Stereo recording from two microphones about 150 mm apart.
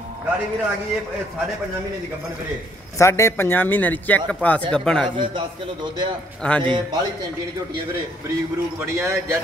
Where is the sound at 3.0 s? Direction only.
20° left (ahead or behind).